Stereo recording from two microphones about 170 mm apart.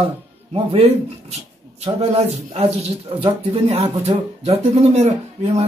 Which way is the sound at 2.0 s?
35° right (ahead or behind).